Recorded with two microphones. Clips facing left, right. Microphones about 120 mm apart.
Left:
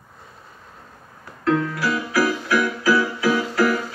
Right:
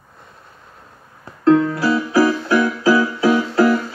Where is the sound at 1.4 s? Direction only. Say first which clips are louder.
Right 7 dB; 30° right (ahead or behind).